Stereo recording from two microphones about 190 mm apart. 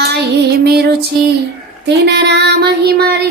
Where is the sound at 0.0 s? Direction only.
60° right (ahead or behind).